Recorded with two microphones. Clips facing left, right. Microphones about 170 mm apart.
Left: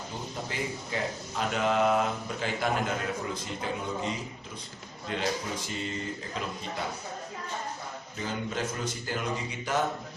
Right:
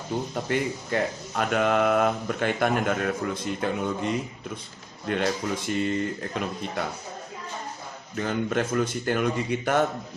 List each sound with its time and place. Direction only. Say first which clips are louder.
0.4 s speech: right 8 dB; 60° right (ahead or behind)
8.1 s speech: right 8 dB; 60° right (ahead or behind)